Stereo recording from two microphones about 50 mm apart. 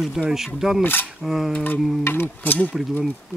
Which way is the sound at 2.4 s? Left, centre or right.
Left.